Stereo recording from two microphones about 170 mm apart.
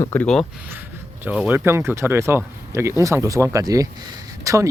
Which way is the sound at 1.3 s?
10° right (ahead or behind).